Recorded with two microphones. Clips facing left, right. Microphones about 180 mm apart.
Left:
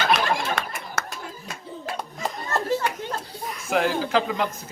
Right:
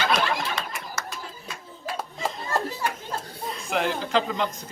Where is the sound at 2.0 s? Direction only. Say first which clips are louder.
Even; 5° right (ahead or behind).